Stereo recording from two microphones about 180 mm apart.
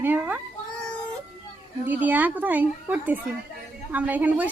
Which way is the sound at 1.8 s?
10° right (ahead or behind).